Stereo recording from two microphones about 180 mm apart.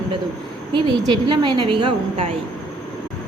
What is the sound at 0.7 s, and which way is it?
A woman's voice, 25° right (ahead or behind).